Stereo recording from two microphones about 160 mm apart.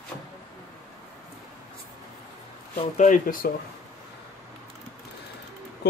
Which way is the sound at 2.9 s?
50° left (ahead or behind).